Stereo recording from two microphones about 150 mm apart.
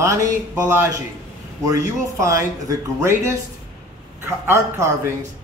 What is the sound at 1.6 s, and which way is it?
A man's voice, 20° right (ahead or behind).